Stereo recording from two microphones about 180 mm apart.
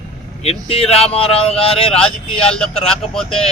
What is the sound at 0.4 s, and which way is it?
Speech, 35° left (ahead or behind).